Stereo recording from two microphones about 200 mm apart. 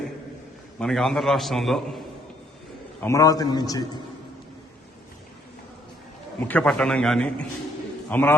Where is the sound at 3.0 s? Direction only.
15° left (ahead or behind).